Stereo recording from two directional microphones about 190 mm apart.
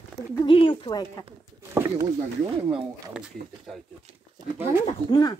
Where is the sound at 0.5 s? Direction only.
30° left (ahead or behind).